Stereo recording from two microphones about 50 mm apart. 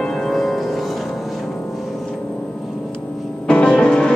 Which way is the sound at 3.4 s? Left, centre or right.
Centre.